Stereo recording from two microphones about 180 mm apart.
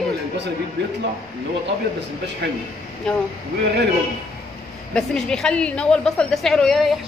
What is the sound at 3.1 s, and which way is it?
Speech, 5° left (ahead or behind).